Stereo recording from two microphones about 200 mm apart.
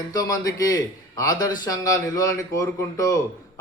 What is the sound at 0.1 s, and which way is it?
A man's voice, 20° left (ahead or behind).